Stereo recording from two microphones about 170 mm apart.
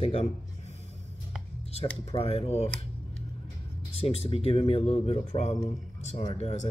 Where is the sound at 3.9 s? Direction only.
35° left (ahead or behind).